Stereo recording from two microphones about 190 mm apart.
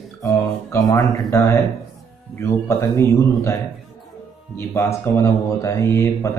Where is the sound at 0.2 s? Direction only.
15° left (ahead or behind).